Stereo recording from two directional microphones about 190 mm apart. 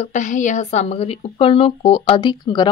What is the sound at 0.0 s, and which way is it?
A woman's voice, 40° left (ahead or behind).